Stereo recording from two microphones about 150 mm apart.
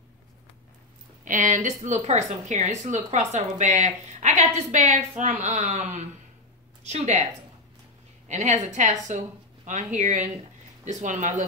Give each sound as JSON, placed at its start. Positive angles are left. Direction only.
{"t": 1.2, "sound": "a woman's voice", "side_deg": -55}
{"t": 8.3, "sound": "speech", "side_deg": -50}